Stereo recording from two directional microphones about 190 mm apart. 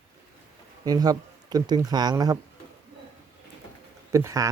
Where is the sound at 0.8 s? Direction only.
20° right (ahead or behind).